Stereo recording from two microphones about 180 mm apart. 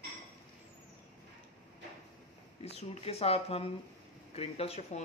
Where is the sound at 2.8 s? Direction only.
35° left (ahead or behind).